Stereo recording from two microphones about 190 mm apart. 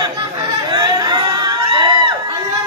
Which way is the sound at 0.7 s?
20° right (ahead or behind).